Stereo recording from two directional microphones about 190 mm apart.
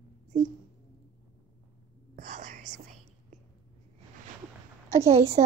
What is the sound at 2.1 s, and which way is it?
Whispering, 40° right (ahead or behind).